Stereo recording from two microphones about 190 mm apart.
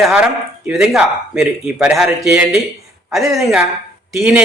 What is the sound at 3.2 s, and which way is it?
Speech, 15° right (ahead or behind).